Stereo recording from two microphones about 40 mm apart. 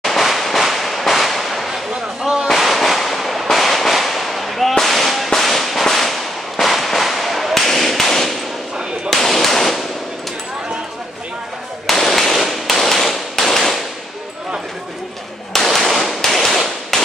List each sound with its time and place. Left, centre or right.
0.0 s firecracker: centre
1.9 s a sound: right
2.4 s firecracker: centre
9.2 s a sound: centre
11.8 s firecracker: centre
15.5 s firecracker: centre